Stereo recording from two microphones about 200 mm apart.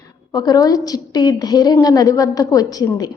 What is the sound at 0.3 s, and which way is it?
A woman's voice, 20° left (ahead or behind).